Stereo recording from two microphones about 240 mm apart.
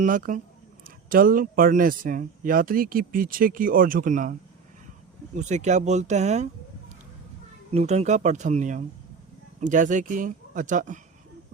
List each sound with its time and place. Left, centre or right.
0.0 s speech: right